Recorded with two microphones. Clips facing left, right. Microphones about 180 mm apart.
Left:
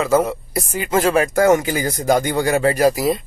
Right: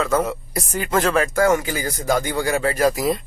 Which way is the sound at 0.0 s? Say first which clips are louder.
Left 4 dB; 10° left (ahead or behind).